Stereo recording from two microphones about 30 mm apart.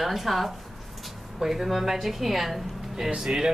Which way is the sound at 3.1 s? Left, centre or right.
Centre.